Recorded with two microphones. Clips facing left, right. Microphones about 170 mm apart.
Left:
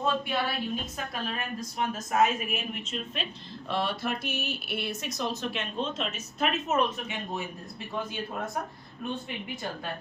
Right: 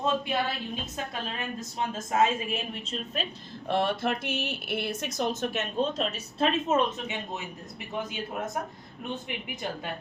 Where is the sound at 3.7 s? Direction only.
50° right (ahead or behind).